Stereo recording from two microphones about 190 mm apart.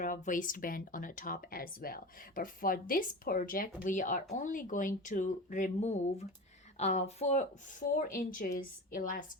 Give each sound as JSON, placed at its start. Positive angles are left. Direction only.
{"t": 0.0, "sound": "speech", "side_deg": 45}